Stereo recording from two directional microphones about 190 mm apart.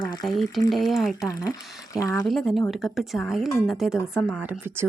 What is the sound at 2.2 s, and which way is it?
A woman's voice, centre (ahead or behind).